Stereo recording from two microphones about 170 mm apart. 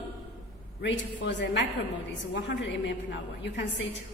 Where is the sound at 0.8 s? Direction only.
90° left.